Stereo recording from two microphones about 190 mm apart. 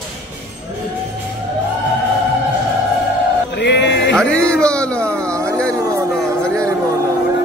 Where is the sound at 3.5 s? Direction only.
65° left (ahead or behind).